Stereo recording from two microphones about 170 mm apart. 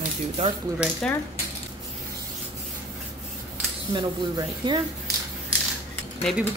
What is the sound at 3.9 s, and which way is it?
Speech, 25° right (ahead or behind).